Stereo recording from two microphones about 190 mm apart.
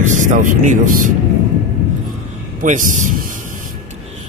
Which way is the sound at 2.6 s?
40° right (ahead or behind).